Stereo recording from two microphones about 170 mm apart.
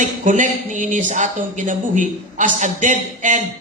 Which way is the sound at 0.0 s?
50° right (ahead or behind).